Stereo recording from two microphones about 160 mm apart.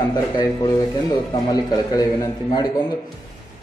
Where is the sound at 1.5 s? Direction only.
25° left (ahead or behind).